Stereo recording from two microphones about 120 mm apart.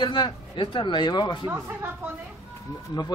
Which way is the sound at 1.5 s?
20° right (ahead or behind).